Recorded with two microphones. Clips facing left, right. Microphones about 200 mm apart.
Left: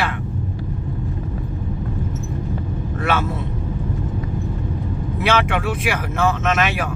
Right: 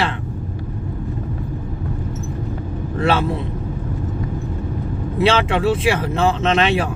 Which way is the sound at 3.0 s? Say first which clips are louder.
Right 4 dB; 30° right (ahead or behind).